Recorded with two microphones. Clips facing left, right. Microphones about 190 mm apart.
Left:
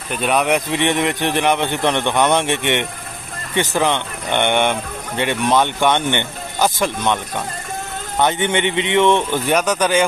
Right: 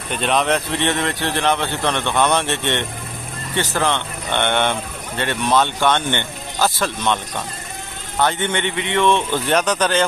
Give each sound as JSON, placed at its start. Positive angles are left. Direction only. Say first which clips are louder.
{"t": 0.1, "sound": "speech", "louder": "left 1 dB", "side_deg": 10}
{"t": 8.2, "sound": "speech", "louder": "left 2 dB", "side_deg": 20}